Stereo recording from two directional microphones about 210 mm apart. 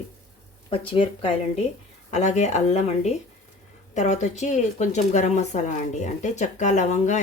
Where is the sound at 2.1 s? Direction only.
35° left (ahead or behind).